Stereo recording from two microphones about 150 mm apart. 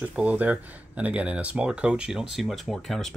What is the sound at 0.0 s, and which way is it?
Speech, 10° right (ahead or behind).